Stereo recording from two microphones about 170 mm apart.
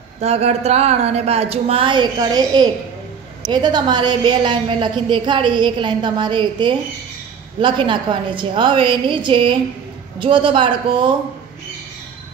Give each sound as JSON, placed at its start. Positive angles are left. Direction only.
{"t": 0.2, "sound": "a woman's voice", "side_deg": -40}